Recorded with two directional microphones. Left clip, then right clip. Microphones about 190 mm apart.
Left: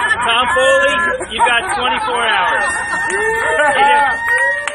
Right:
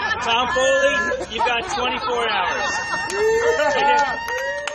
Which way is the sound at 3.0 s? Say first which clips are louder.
Left 1 dB; 40° right (ahead or behind).